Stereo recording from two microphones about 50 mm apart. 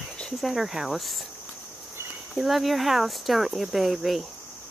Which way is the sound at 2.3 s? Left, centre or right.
Centre.